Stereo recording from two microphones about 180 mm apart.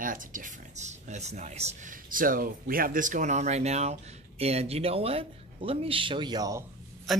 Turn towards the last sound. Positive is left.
turn(degrees=0)  # may be behind; listen again after turning